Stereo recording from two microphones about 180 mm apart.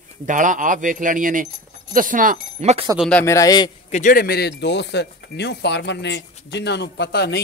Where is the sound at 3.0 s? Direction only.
5° left (ahead or behind).